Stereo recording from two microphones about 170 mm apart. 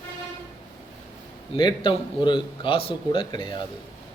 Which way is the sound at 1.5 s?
30° left (ahead or behind).